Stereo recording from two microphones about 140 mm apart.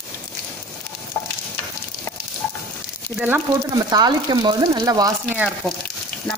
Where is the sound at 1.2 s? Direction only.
20° left (ahead or behind).